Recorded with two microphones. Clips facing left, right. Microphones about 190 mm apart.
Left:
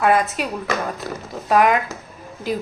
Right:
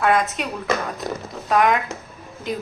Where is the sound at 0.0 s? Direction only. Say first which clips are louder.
Left 2 dB; 5° left (ahead or behind).